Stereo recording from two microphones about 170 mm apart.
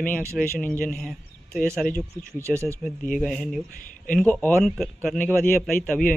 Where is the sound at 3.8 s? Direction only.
50° left (ahead or behind).